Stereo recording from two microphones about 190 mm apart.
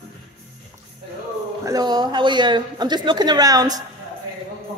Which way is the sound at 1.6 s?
20° right (ahead or behind).